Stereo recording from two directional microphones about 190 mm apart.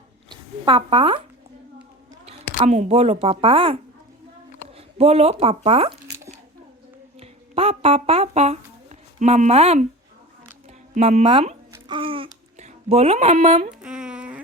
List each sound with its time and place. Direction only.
0.3 s a sound: 25° right (ahead or behind)
2.6 s a woman's voice: 40° right (ahead or behind)
4.9 s a woman's voice: 35° right (ahead or behind)
7.2 s speech: 30° right (ahead or behind)
10.9 s babbling: 35° right (ahead or behind)
13.8 s a sound: 5° right (ahead or behind)